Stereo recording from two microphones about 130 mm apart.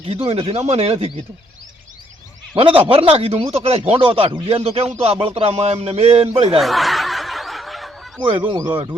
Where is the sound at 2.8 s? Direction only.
45° right (ahead or behind).